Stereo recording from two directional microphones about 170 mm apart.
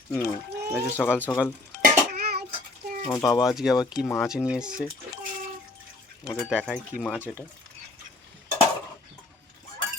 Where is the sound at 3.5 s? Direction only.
Centre (ahead or behind).